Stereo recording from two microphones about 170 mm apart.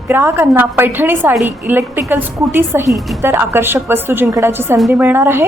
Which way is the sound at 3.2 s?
15° right (ahead or behind).